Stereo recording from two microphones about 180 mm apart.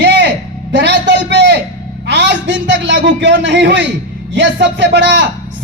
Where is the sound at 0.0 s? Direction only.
70° right (ahead or behind).